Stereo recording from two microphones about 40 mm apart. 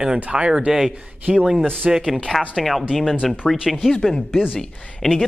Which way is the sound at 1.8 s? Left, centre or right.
Centre.